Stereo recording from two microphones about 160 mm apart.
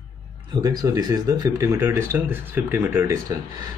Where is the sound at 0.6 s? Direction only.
25° right (ahead or behind).